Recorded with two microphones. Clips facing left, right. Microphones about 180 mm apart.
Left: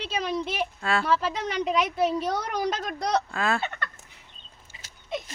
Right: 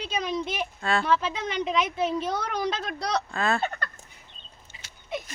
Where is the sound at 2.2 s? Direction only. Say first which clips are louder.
Left 1 dB; 40° left (ahead or behind).